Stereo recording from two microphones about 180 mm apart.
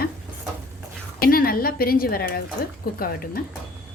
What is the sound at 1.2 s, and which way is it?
Speech, 55° left (ahead or behind).